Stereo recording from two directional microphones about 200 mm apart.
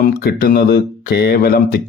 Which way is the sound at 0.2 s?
50° left (ahead or behind).